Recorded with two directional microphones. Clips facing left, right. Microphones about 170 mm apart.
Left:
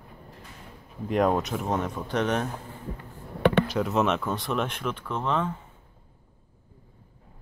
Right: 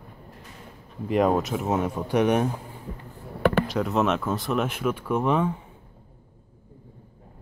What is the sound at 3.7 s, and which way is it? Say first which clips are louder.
Speech: right 1 dB; centre (ahead or behind).